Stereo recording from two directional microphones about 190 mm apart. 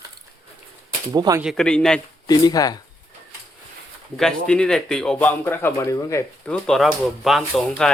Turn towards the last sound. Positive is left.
turn(degrees=0)  # may be behind; listen again after turning